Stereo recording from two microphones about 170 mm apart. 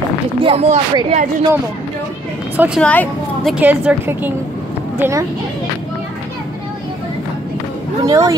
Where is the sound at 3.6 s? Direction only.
10° right (ahead or behind).